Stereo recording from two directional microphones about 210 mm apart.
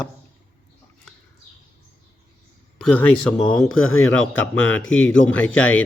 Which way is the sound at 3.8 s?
75° left (ahead or behind).